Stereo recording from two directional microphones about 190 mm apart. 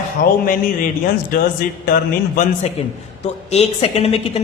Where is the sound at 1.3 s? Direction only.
50° left (ahead or behind).